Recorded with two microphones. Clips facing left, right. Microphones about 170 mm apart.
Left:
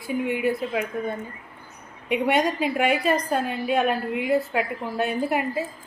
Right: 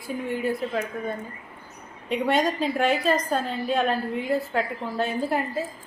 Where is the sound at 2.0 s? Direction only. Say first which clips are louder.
Left 1 dB; 10° left (ahead or behind).